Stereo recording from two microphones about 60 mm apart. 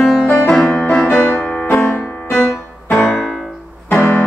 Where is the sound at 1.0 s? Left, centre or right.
Left.